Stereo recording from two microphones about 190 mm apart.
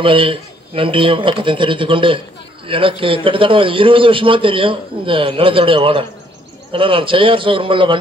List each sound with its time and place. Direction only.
0.0 s a man's voice: 30° right (ahead or behind)